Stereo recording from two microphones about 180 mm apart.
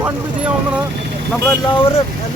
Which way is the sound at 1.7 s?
30° left (ahead or behind).